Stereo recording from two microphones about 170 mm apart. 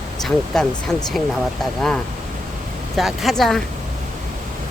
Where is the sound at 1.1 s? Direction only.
Centre (ahead or behind).